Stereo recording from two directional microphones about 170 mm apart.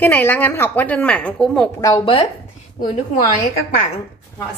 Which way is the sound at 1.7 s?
20° left (ahead or behind).